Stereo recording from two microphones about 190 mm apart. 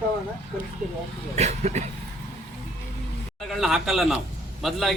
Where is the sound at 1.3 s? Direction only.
35° right (ahead or behind).